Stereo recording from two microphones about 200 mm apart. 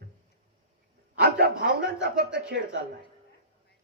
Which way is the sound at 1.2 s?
50° right (ahead or behind).